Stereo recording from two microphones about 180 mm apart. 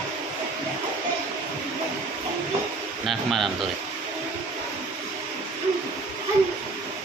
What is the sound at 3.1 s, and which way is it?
Speech, centre (ahead or behind).